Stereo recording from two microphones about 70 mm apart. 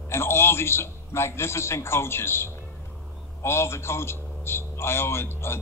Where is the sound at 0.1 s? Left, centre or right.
Left.